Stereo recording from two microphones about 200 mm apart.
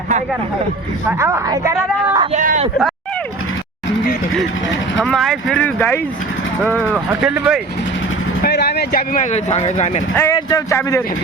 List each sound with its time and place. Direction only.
1.0 s speech: 15° right (ahead or behind)
2.2 s speech: 40° right (ahead or behind)
4.9 s speech: centre (ahead or behind)
6.9 s speech: 10° right (ahead or behind)
8.4 s speech: 55° left (ahead or behind); by 10.0 s 35° left (ahead or behind)
10.2 s speech: 15° left (ahead or behind)